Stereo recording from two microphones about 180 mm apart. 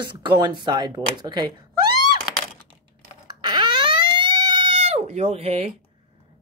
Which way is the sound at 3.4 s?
25° right (ahead or behind).